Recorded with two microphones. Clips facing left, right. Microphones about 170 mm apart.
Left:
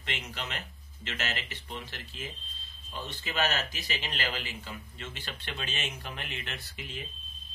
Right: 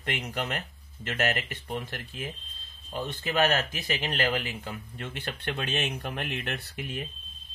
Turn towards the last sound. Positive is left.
turn(degrees=-60)  # may be behind; listen again after turning